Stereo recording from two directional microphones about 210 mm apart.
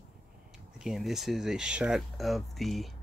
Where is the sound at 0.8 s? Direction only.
Centre (ahead or behind).